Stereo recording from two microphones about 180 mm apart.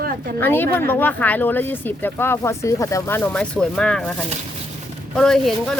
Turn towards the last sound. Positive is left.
turn(degrees=0)  # may be behind; listen again after turning